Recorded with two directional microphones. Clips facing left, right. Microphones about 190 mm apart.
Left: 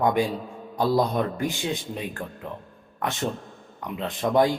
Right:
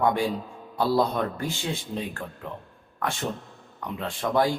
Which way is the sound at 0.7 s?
15° left (ahead or behind).